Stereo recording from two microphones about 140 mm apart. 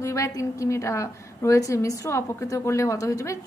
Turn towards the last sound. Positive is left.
turn(degrees=25)  # may be behind; listen again after turning